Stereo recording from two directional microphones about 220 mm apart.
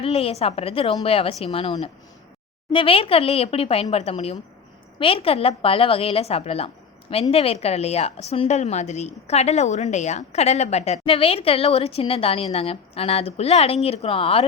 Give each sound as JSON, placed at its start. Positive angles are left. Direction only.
{"t": 0.0, "sound": "a woman's voice", "side_deg": 25}